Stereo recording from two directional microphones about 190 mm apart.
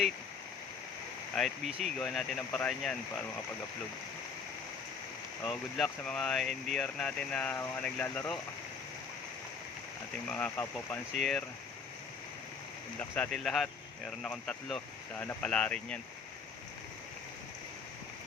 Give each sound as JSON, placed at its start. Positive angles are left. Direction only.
{"t": 1.4, "sound": "speech", "side_deg": 0}
{"t": 5.4, "sound": "speech", "side_deg": 0}
{"t": 10.2, "sound": "speech", "side_deg": 10}
{"t": 13.0, "sound": "speech", "side_deg": 5}